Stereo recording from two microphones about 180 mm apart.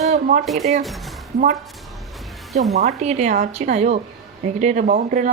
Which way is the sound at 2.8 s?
40° right (ahead or behind).